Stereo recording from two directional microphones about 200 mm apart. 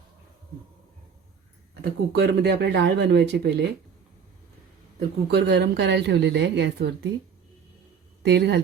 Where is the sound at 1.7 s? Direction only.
55° right (ahead or behind).